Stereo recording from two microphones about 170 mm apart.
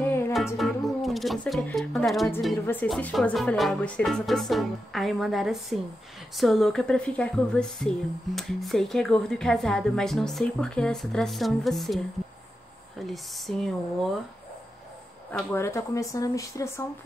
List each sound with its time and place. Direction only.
0.0 s music: 15° left (ahead or behind)
0.6 s speech: centre (ahead or behind)
2.6 s a woman's voice: 10° left (ahead or behind)
13.0 s speech: centre (ahead or behind)
15.5 s speech: 15° left (ahead or behind)